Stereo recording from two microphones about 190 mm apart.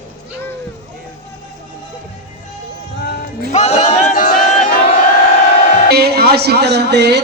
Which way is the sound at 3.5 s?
35° left (ahead or behind).